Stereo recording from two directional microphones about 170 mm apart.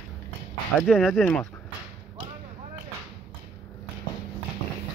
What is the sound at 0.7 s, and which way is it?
Speech, centre (ahead or behind).